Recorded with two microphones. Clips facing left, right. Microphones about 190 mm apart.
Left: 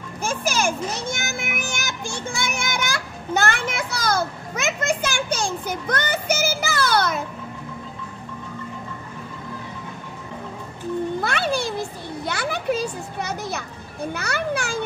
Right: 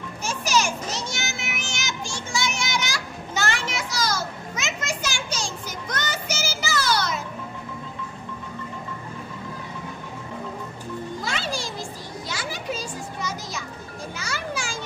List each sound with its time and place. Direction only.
0.2 s children playing: 55° left (ahead or behind)
11.1 s children playing: 60° left (ahead or behind)